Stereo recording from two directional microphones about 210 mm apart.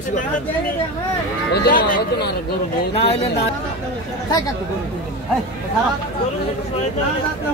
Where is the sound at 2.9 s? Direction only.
30° left (ahead or behind).